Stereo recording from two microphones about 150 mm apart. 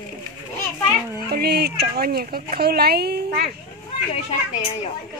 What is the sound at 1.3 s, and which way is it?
Speech, 90° right.